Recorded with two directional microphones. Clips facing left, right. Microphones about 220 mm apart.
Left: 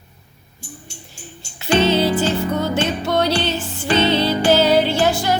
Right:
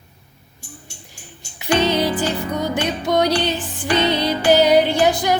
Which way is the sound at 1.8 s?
15° right (ahead or behind).